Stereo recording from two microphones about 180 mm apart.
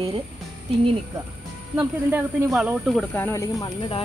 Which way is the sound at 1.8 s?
10° right (ahead or behind).